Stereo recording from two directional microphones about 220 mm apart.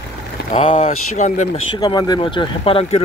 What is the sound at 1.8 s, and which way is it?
Speech, 20° left (ahead or behind).